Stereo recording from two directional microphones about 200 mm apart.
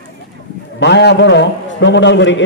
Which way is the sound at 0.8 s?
60° left (ahead or behind).